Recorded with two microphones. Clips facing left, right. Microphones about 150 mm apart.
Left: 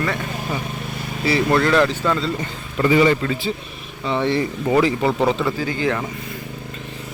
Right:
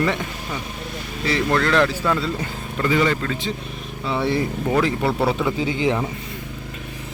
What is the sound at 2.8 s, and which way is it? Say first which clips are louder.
Speech: left 4 dB; 10° left (ahead or behind).